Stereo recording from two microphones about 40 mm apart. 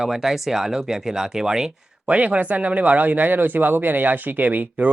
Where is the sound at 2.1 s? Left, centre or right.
Right.